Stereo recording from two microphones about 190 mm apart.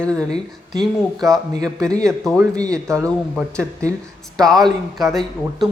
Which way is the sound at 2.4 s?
20° right (ahead or behind).